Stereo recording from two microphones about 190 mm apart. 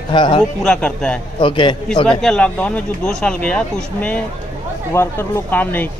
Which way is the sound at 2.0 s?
5° left (ahead or behind).